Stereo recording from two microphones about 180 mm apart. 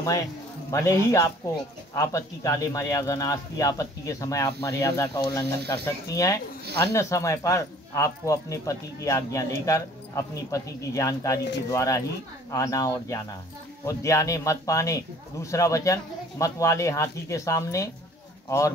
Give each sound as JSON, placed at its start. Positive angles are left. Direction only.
{"t": 0.0, "sound": "speech", "side_deg": 15}